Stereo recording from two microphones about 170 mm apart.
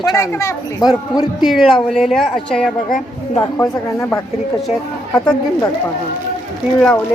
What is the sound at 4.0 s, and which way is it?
Speech, 15° left (ahead or behind).